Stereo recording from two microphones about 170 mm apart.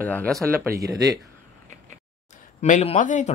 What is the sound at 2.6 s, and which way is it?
Speech, 45° left (ahead or behind).